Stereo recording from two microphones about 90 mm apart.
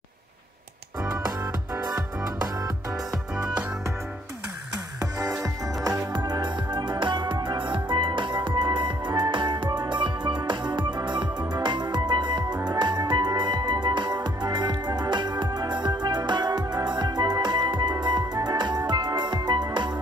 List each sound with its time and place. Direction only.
6.1 s music: 50° right (ahead or behind)